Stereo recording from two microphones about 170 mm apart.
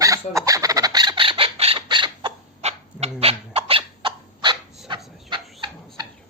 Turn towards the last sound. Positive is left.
turn(degrees=-30)  # may be behind; listen again after turning